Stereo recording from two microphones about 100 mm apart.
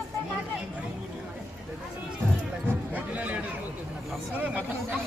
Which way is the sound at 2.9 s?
15° right (ahead or behind).